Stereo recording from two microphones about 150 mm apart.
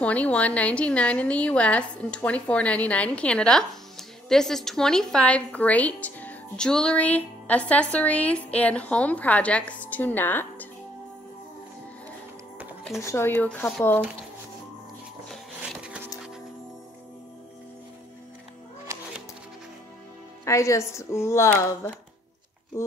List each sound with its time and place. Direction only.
0.0 s a woman's voice: 10° left (ahead or behind)
13.0 s a woman's voice: 15° left (ahead or behind)
15.8 s music: 10° right (ahead or behind)
18.9 s music: 20° right (ahead or behind)
20.4 s a woman's voice: 20° left (ahead or behind)